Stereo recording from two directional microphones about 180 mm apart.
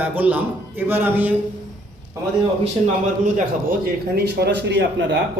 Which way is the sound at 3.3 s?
50° right (ahead or behind).